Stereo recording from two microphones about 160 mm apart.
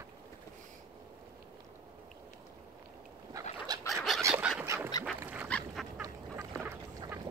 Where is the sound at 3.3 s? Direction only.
20° right (ahead or behind).